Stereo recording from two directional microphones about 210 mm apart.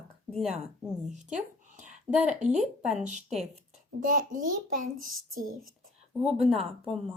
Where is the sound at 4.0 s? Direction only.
40° right (ahead or behind).